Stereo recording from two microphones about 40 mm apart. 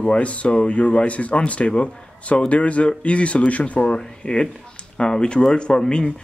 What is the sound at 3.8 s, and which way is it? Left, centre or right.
Speech, left.